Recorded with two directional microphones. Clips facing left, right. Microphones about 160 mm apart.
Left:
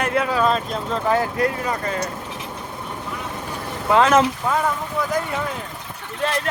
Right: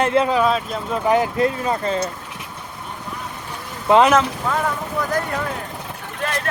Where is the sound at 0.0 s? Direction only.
25° right (ahead or behind).